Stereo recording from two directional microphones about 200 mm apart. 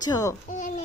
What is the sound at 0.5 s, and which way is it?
Speech, 40° left (ahead or behind).